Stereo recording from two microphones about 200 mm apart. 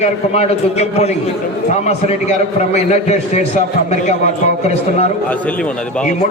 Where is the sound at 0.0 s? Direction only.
30° left (ahead or behind).